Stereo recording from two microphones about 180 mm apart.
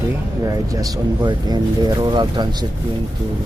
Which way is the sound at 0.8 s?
20° right (ahead or behind).